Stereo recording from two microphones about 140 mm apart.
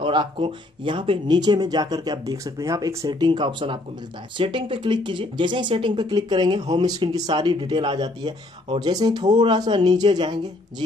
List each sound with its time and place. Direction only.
0.0 s speech: 35° right (ahead or behind)